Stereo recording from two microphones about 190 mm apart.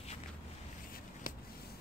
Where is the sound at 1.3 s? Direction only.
45° left (ahead or behind).